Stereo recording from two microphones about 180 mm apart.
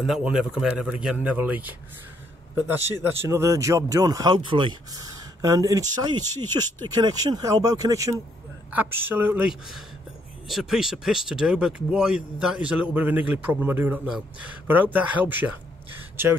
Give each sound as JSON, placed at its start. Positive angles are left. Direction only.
{"t": 0.0, "sound": "speech", "side_deg": -5}
{"t": 2.9, "sound": "a man's voice", "side_deg": -15}